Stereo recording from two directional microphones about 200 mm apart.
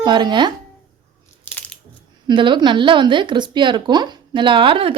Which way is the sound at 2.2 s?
25° right (ahead or behind).